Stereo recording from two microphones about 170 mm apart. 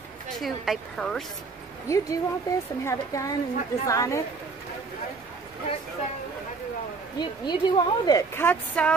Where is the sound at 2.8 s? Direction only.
20° left (ahead or behind).